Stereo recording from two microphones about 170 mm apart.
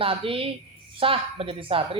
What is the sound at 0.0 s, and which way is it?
Speech, 30° right (ahead or behind).